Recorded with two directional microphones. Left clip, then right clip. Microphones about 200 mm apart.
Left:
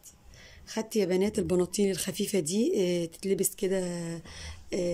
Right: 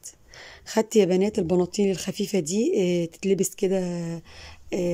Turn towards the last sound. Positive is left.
turn(degrees=-5)  # may be behind; listen again after turning